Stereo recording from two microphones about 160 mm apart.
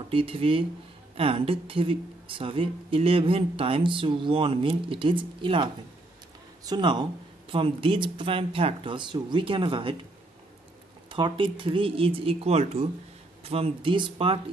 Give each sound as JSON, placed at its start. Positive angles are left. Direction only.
{"t": 0.1, "sound": "a woman's voice", "side_deg": -35}
{"t": 11.1, "sound": "a woman's voice", "side_deg": -30}